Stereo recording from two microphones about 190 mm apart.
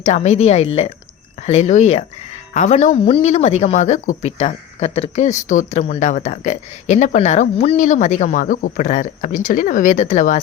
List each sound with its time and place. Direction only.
0.0 s speech: 35° left (ahead or behind)